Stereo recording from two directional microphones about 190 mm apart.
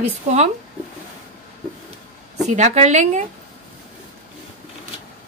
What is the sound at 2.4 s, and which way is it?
Speech, 40° right (ahead or behind).